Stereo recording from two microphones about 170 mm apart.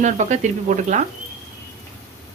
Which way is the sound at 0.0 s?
45° right (ahead or behind).